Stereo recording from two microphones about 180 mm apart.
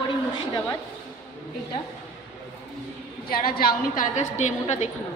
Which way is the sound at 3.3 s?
55° left (ahead or behind).